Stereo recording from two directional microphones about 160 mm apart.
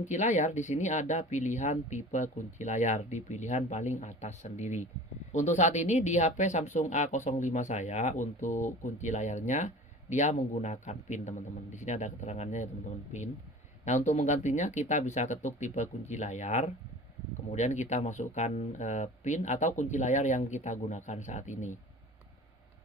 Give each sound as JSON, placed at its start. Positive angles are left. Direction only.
{"t": 0.0, "sound": "speech", "side_deg": 50}